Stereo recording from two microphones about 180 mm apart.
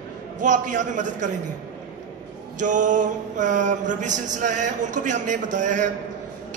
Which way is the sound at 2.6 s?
45° right (ahead or behind).